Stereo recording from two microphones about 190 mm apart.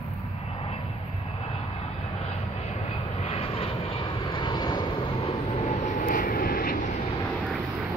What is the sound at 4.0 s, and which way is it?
Vehicle, 20° left (ahead or behind).